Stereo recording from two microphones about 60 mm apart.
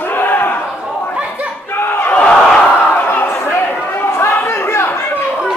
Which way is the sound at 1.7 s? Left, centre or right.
Left.